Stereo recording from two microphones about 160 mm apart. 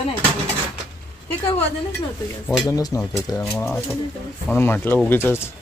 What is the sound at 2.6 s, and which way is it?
Speech, 25° left (ahead or behind).